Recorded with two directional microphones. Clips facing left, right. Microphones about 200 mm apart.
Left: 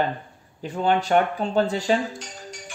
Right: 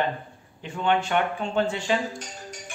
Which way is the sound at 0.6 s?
40° left (ahead or behind).